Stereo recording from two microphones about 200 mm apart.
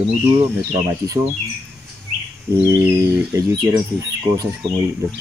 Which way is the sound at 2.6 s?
15° right (ahead or behind).